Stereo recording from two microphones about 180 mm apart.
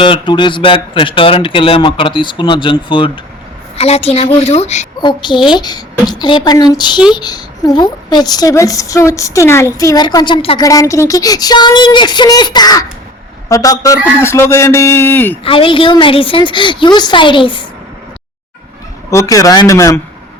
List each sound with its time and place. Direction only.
0.0 s a woman's voice: 25° left (ahead or behind)
4.9 s a woman's voice: 25° left (ahead or behind)
15.4 s a woman's voice: 30° left (ahead or behind)
19.1 s a woman's voice: 20° left (ahead or behind)